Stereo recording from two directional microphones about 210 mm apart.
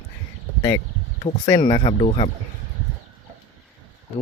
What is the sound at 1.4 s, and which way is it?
Speech, 15° left (ahead or behind).